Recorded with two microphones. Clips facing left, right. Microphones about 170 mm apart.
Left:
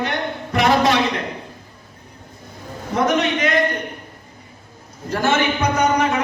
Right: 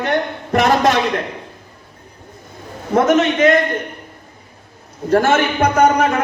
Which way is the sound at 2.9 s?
50° right (ahead or behind).